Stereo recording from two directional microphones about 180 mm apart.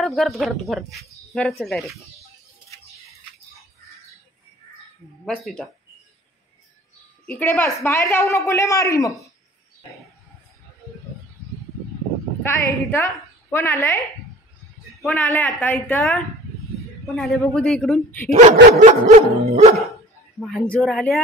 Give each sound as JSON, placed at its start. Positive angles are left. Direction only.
{"t": 0.0, "sound": "a woman's voice", "side_deg": 0}
{"t": 5.2, "sound": "a woman's voice", "side_deg": 0}
{"t": 7.2, "sound": "a woman's voice", "side_deg": 10}
{"t": 12.4, "sound": "a woman's voice", "side_deg": 15}
{"t": 15.0, "sound": "a woman's voice", "side_deg": 10}
{"t": 18.3, "sound": "dog", "side_deg": -40}
{"t": 19.8, "sound": "speech", "side_deg": 0}